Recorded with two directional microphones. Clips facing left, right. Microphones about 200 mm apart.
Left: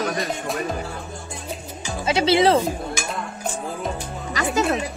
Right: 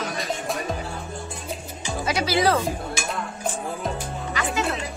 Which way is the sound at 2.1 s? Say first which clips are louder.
Left 5 dB; 25° left (ahead or behind).